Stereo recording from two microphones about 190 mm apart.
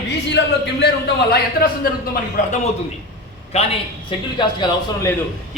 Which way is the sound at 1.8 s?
50° left (ahead or behind).